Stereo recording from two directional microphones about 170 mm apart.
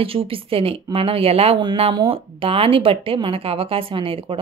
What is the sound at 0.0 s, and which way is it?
Speech, 35° right (ahead or behind).